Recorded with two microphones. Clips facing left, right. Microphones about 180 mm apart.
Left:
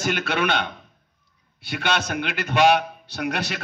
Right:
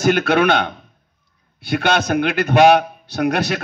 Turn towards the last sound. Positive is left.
turn(degrees=-45)  # may be behind; listen again after turning